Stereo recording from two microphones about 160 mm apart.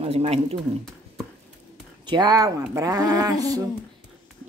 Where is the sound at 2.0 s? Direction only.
25° right (ahead or behind).